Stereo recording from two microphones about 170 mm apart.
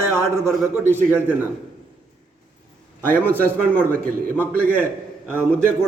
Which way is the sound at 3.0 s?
10° left (ahead or behind).